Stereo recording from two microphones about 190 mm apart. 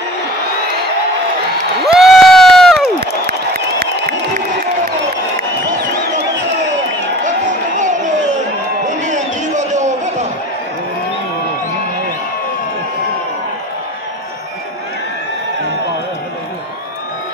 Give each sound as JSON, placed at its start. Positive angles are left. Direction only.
{"t": 2.0, "sound": "crowd", "side_deg": 0}
{"t": 3.3, "sound": "crowd", "side_deg": -55}
{"t": 7.7, "sound": "a sound", "side_deg": -40}